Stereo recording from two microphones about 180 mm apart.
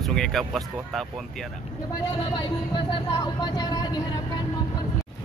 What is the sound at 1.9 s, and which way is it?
Speech, 25° left (ahead or behind).